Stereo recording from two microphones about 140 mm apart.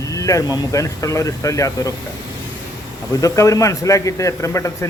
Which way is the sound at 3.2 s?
25° left (ahead or behind).